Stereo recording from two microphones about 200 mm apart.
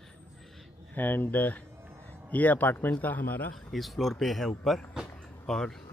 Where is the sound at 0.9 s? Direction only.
10° left (ahead or behind).